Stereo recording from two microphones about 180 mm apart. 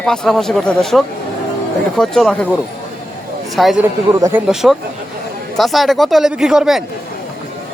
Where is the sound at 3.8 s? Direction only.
10° right (ahead or behind).